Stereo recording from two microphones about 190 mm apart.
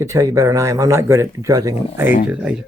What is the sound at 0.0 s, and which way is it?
Speech, 15° right (ahead or behind).